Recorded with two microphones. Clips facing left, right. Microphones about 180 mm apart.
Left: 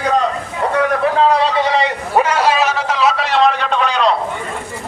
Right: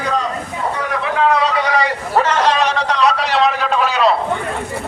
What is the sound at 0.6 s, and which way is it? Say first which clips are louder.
Vehicle: left 5 dB; 65° left (ahead or behind).